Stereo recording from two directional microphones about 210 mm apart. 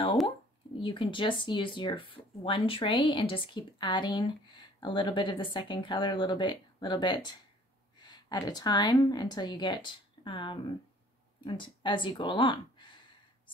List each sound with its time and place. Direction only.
0.7 s speech: 25° left (ahead or behind)